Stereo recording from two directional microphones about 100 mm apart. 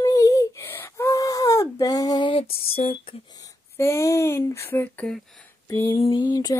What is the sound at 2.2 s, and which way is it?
Female singing, 65° left (ahead or behind).